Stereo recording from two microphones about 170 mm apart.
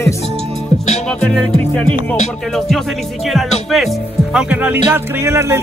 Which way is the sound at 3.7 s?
Centre (ahead or behind).